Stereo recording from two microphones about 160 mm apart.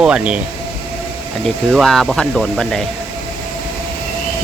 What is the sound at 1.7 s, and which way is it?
Speech, centre (ahead or behind).